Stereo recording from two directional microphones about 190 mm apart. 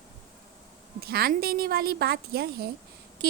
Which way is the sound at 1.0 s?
55° right (ahead or behind).